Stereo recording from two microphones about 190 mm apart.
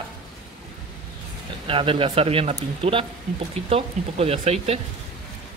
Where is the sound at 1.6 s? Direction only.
30° right (ahead or behind).